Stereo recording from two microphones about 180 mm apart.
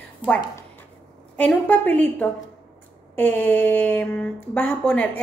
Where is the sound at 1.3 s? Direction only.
10° left (ahead or behind).